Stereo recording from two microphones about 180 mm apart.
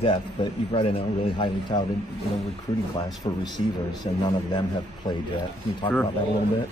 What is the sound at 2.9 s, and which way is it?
A man's voice, 20° left (ahead or behind).